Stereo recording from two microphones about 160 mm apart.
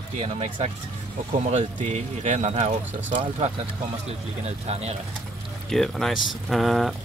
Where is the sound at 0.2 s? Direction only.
35° right (ahead or behind).